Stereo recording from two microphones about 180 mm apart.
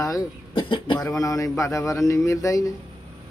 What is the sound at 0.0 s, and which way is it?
A man's voice, 25° left (ahead or behind).